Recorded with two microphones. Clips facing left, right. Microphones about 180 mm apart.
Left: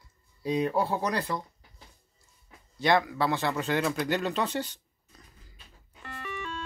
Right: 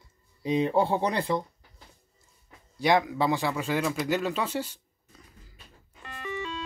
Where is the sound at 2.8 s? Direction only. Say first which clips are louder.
Right 1 dB; 15° right (ahead or behind).